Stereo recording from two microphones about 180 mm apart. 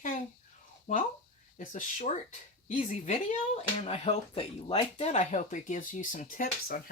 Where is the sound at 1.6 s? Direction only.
45° left (ahead or behind).